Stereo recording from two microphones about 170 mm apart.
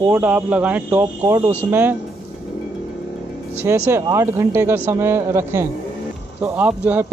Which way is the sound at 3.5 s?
15° right (ahead or behind).